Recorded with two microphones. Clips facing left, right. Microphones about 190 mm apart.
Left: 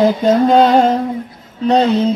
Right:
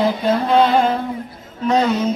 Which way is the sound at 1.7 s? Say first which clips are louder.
Left 4 dB; 35° left (ahead or behind).